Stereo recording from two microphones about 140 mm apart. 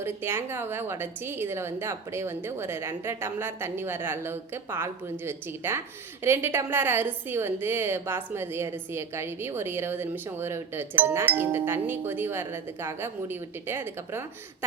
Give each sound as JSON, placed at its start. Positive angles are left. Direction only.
{"t": 0.0, "sound": "a woman's voice", "side_deg": -15}